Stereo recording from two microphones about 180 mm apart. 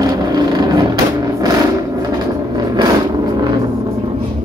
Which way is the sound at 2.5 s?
20° right (ahead or behind).